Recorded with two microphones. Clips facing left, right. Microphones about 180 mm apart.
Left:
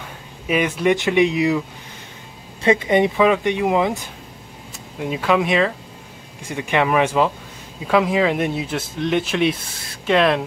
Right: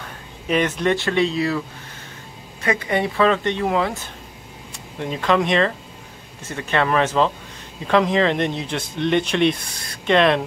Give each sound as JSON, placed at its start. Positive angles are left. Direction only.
{"t": 0.0, "sound": "speech", "side_deg": 10}
{"t": 2.6, "sound": "speech", "side_deg": 25}
{"t": 4.9, "sound": "speech", "side_deg": 5}